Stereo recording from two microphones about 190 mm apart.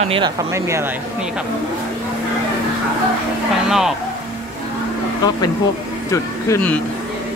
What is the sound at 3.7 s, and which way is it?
Speech, centre (ahead or behind).